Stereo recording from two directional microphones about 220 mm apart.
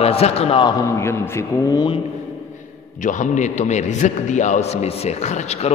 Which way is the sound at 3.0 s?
35° left (ahead or behind).